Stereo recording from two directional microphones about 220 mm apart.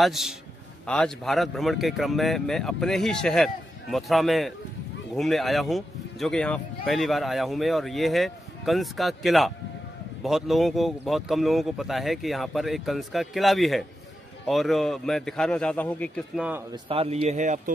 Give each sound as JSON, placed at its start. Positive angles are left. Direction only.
{"t": 0.0, "sound": "speech", "side_deg": 0}
{"t": 16.4, "sound": "speech", "side_deg": -10}
{"t": 16.9, "sound": "speech", "side_deg": -25}